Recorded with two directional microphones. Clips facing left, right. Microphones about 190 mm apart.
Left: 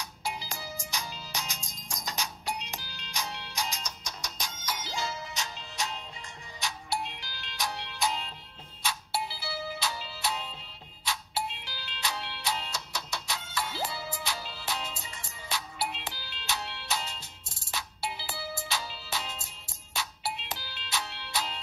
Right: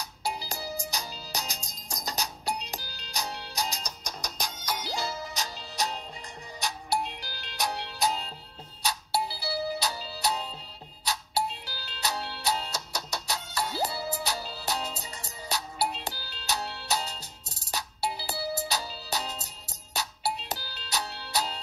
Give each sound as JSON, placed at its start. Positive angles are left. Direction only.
{"t": 0.0, "sound": "music", "side_deg": -35}